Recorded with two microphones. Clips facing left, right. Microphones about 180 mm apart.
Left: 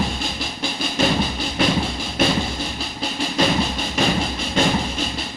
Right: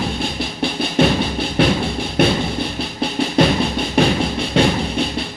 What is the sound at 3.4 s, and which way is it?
Music, 60° right (ahead or behind).